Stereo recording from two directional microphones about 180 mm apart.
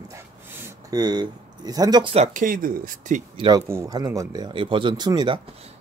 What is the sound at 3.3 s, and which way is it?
Speech, 25° right (ahead or behind).